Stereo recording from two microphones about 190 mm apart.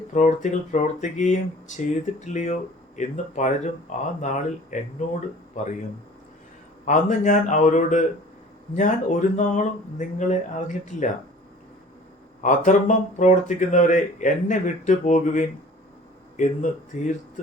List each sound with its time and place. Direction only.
0.1 s speech: 40° left (ahead or behind)
6.8 s speech: 40° left (ahead or behind)
12.4 s speech: 40° left (ahead or behind)